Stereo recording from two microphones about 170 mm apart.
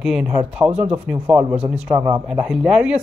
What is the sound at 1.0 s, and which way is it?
Speech, 10° right (ahead or behind).